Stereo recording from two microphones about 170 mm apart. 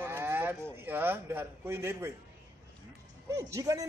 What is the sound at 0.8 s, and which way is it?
A man's voice, 10° right (ahead or behind).